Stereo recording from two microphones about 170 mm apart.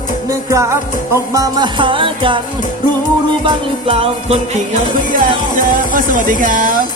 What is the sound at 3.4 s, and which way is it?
Music, 30° right (ahead or behind).